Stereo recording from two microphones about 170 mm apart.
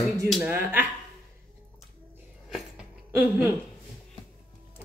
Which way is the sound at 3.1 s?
10° right (ahead or behind).